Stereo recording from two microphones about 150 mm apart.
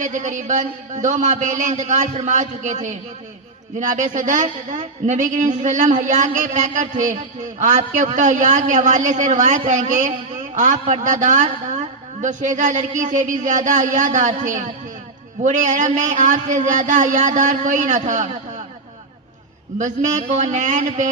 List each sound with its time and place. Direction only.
0.0 s a man's voice: 55° right (ahead or behind)
19.8 s a man's voice: 50° right (ahead or behind)